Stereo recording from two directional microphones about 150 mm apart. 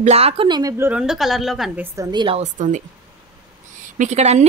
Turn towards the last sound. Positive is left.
turn(degrees=-50)  # may be behind; listen again after turning